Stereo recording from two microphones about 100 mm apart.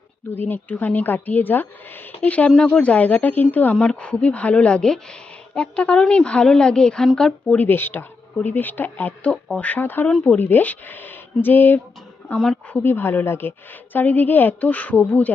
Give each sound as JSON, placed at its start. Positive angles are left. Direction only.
{"t": 0.3, "sound": "a woman's voice", "side_deg": 20}
{"t": 10.1, "sound": "a woman's voice", "side_deg": 5}
{"t": 10.3, "sound": "a woman's voice", "side_deg": 20}